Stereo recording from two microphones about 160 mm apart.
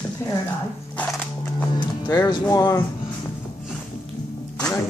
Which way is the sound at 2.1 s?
25° left (ahead or behind).